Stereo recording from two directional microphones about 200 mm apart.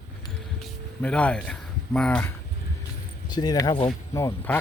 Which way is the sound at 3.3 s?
20° left (ahead or behind).